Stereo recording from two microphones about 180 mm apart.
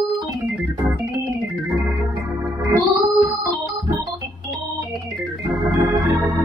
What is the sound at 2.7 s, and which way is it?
Music, 10° right (ahead or behind).